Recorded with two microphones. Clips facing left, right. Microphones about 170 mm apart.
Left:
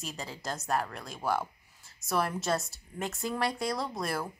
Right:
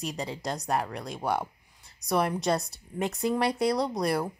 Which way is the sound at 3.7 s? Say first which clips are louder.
Right 6 dB; 20° right (ahead or behind).